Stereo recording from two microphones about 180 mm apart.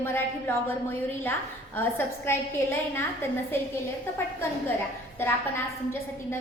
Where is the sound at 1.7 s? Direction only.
10° left (ahead or behind).